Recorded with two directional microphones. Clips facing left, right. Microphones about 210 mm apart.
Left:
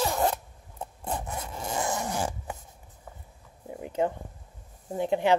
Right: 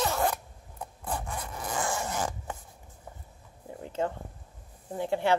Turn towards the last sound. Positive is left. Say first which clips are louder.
# left 3 dB
turn(degrees=20)  # may be behind; listen again after turning